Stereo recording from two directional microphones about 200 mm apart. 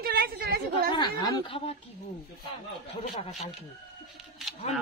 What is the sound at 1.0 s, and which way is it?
Speech, 20° left (ahead or behind).